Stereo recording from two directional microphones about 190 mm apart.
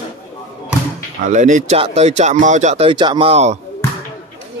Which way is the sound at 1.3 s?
40° right (ahead or behind).